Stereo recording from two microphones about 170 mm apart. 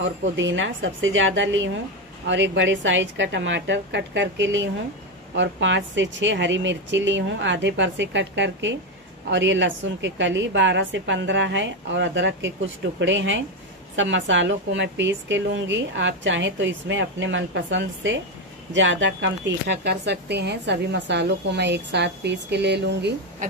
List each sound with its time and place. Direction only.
0.0 s a woman's voice: 90° right